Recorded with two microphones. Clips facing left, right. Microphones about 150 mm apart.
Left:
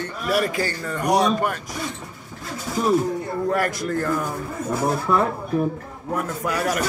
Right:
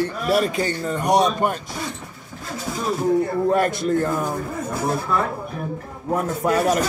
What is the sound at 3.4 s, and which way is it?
Speech, 25° right (ahead or behind).